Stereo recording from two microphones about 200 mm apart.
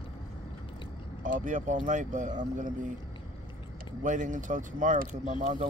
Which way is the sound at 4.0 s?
40° right (ahead or behind).